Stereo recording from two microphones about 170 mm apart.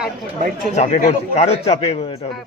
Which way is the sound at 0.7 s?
40° left (ahead or behind).